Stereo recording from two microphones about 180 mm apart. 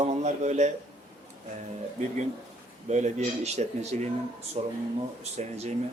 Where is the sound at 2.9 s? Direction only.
40° right (ahead or behind).